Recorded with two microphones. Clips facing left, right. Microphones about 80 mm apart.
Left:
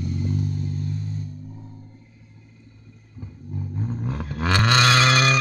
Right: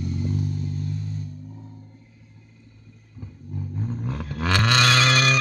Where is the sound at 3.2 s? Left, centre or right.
Centre.